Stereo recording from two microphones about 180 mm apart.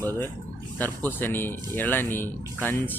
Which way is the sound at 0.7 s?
10° left (ahead or behind).